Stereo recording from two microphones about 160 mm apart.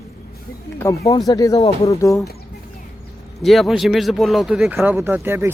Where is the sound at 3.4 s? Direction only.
Centre (ahead or behind).